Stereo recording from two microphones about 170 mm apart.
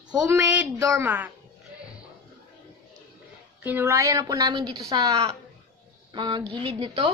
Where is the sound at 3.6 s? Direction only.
15° right (ahead or behind); by 7.1 s 30° right (ahead or behind).